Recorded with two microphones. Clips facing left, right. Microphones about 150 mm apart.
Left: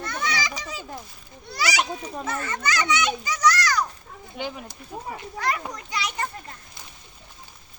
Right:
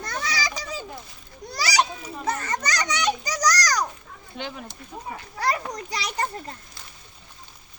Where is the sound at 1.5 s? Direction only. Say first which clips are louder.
Right 2 dB; 40° right (ahead or behind).